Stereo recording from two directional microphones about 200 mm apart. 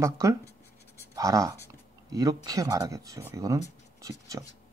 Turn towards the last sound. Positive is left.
turn(degrees=-15)  # may be behind; listen again after turning